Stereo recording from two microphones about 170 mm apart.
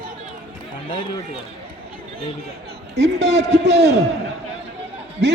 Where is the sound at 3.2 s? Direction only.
40° right (ahead or behind).